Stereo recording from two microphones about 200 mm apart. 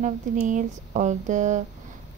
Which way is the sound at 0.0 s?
40° right (ahead or behind).